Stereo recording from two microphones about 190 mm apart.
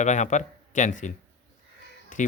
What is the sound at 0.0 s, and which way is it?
Speech, 40° left (ahead or behind).